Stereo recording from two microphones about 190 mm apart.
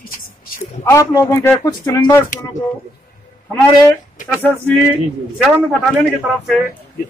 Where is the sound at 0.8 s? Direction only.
15° left (ahead or behind).